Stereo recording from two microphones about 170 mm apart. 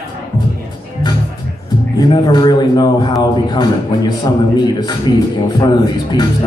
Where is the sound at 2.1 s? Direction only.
25° left (ahead or behind).